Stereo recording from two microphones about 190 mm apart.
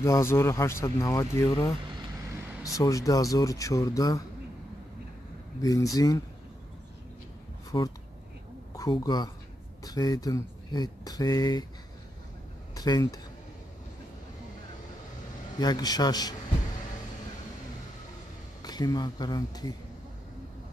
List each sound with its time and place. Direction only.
0.0 s speech: 15° left (ahead or behind)
5.6 s speech: 20° left (ahead or behind)
7.7 s speech: 20° left (ahead or behind)
12.7 s speech: 20° left (ahead or behind)
15.6 s speech: 20° left (ahead or behind)
18.6 s speech: 20° left (ahead or behind)